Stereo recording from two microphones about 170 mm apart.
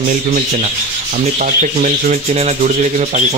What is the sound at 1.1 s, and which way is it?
Speech, 45° right (ahead or behind).